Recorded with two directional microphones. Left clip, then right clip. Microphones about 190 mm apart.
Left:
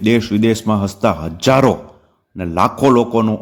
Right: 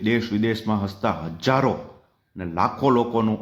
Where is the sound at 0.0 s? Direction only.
40° left (ahead or behind).